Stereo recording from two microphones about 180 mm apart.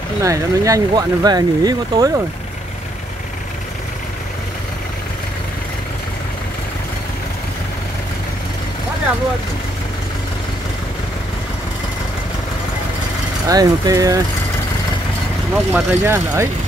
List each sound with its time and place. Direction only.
0.2 s speech: 15° right (ahead or behind)
13.5 s speech: 20° right (ahead or behind)
15.5 s speech: 10° right (ahead or behind)